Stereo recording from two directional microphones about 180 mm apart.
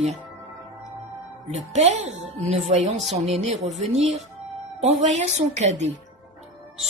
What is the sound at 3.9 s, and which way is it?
A woman's voice, 40° right (ahead or behind).